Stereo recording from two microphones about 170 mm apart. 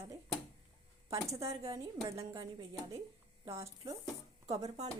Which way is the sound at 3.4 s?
35° right (ahead or behind).